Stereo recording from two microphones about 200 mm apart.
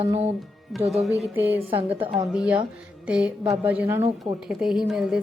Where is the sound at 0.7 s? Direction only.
Centre (ahead or behind).